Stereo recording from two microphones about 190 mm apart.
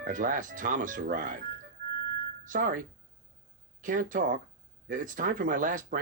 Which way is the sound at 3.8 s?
45° right (ahead or behind).